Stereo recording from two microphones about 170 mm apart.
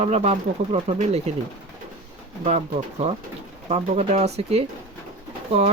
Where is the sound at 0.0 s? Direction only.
40° right (ahead or behind).